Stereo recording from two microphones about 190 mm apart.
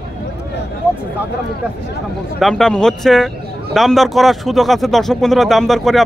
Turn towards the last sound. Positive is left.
turn(degrees=0)  # may be behind; listen again after turning